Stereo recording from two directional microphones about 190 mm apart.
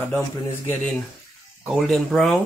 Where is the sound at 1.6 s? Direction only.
Centre (ahead or behind).